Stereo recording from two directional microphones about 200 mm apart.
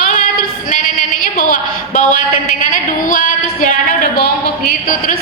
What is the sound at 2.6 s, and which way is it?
A woman's voice, 40° left (ahead or behind).